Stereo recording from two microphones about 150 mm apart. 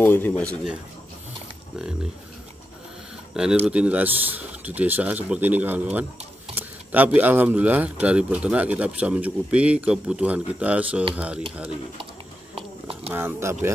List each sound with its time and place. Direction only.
0.0 s speech: 10° left (ahead or behind)
3.6 s speech: 10° right (ahead or behind)
12.5 s a sound: 40° right (ahead or behind)
13.1 s speech: 15° right (ahead or behind)